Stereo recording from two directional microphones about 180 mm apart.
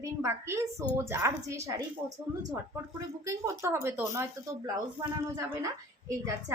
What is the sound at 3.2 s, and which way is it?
A woman's voice, 15° right (ahead or behind).